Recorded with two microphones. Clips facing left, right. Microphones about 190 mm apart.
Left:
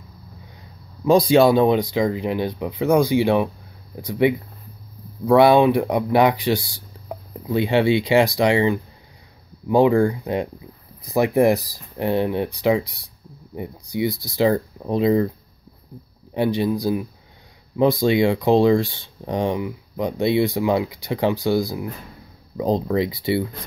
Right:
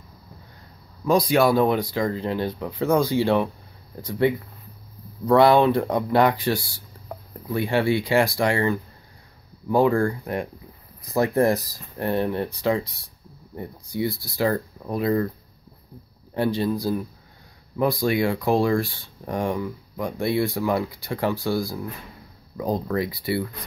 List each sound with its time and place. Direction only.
1.0 s speech: 25° left (ahead or behind)
16.3 s speech: 15° left (ahead or behind)